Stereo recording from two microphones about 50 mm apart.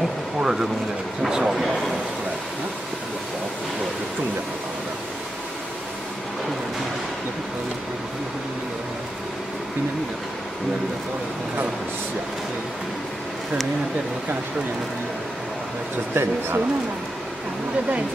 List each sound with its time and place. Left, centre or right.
0.4 s speech: centre
16.2 s speech: right